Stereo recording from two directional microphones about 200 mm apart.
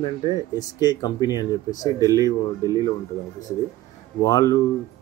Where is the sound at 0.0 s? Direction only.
20° left (ahead or behind).